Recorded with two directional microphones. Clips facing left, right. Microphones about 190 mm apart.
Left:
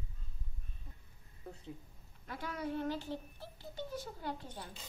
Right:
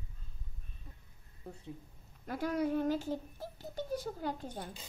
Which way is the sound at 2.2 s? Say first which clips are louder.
Right 8 dB; 40° right (ahead or behind).